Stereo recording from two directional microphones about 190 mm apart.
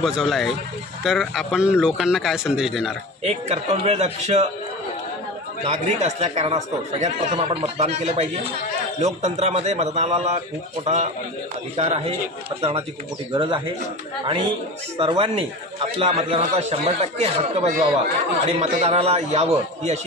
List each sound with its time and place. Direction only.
0.0 s a man's voice: centre (ahead or behind)
3.3 s speech: 35° right (ahead or behind)
5.7 s speech: 35° right (ahead or behind)
11.7 s speech: 30° right (ahead or behind)
13.3 s speech: 25° right (ahead or behind)